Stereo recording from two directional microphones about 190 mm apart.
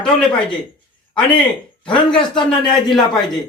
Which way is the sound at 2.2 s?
25° left (ahead or behind).